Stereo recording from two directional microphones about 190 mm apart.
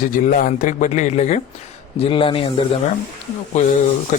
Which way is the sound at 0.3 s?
45° left (ahead or behind).